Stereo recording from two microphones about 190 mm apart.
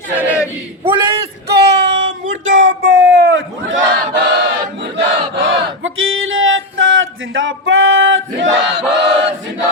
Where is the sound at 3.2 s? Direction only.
90° right.